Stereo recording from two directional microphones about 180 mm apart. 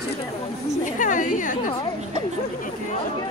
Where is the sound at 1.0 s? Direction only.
45° left (ahead or behind).